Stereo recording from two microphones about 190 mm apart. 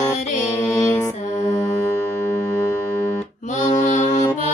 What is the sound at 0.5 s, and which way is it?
Music, 15° left (ahead or behind).